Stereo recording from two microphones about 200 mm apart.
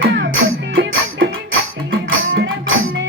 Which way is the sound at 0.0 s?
65° right (ahead or behind).